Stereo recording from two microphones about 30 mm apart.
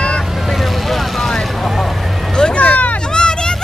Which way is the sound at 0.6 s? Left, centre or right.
Centre.